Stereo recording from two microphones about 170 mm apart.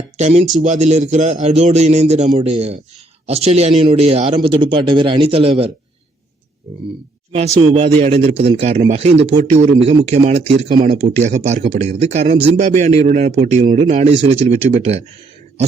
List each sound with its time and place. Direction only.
0.2 s speech: 40° right (ahead or behind)
7.3 s speech: 35° right (ahead or behind)